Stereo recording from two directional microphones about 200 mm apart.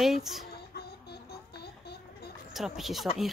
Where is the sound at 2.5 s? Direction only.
Centre (ahead or behind).